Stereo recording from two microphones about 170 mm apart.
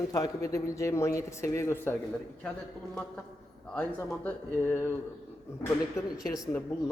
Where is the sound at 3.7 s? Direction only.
10° left (ahead or behind).